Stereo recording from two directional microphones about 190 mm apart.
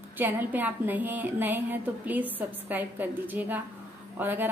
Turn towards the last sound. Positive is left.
turn(degrees=-10)  # may be behind; listen again after turning